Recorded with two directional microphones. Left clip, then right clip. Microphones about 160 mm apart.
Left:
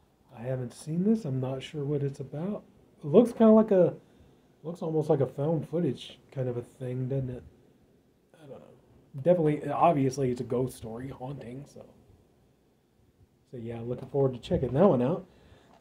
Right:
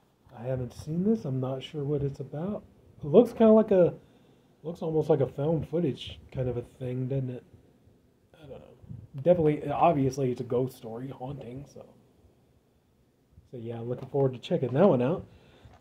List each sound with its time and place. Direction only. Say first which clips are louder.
0.3 s speech: right 1 dB; centre (ahead or behind)
8.3 s a sound: right 1 dB; centre (ahead or behind)
9.2 s speech: right 1 dB; centre (ahead or behind)
13.5 s speech: right 1 dB; centre (ahead or behind)